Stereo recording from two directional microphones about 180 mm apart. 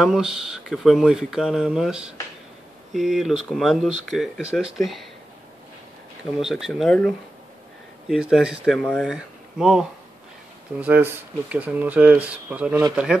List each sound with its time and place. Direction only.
0.0 s speech: 5° right (ahead or behind)
6.3 s speech: 5° right (ahead or behind)